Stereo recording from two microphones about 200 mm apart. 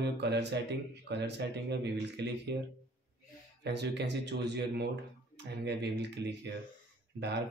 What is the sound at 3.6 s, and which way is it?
Speech, 60° right (ahead or behind).